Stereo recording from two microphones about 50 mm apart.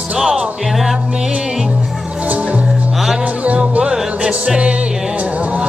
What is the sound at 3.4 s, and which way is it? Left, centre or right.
Music, right.